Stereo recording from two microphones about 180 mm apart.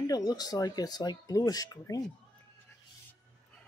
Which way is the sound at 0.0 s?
20° left (ahead or behind).